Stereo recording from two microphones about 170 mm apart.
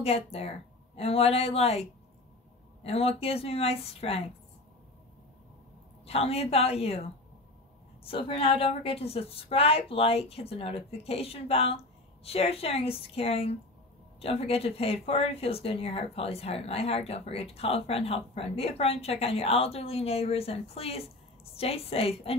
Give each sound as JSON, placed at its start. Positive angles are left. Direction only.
{"t": 0.0, "sound": "speech", "side_deg": 35}
{"t": 6.0, "sound": "speech", "side_deg": 35}
{"t": 8.0, "sound": "speech", "side_deg": 35}